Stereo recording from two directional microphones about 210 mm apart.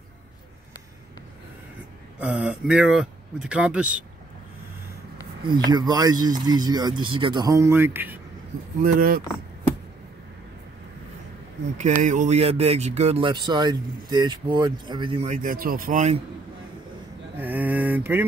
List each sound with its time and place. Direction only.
2.1 s speech: 5° right (ahead or behind)
5.4 s speech: 20° right (ahead or behind)
8.8 s speech: 40° right (ahead or behind)
11.8 s speech: 35° right (ahead or behind)
17.4 s a sound: 10° right (ahead or behind)